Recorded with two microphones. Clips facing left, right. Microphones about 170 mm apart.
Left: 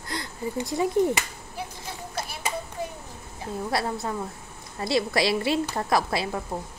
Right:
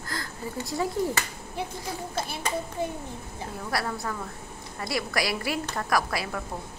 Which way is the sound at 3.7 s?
25° left (ahead or behind).